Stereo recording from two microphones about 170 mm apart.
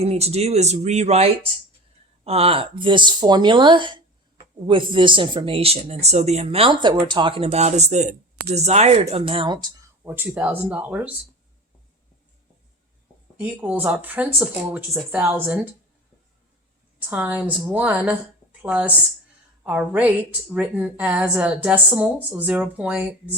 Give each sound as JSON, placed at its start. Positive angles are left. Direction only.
{"t": 0.0, "sound": "speech", "side_deg": -35}
{"t": 10.2, "sound": "a woman's voice", "side_deg": -10}
{"t": 13.4, "sound": "a woman's voice", "side_deg": -10}
{"t": 17.1, "sound": "a woman's voice", "side_deg": -10}